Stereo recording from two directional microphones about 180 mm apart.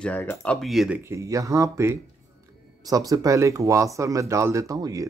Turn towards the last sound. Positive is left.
turn(degrees=-20)  # may be behind; listen again after turning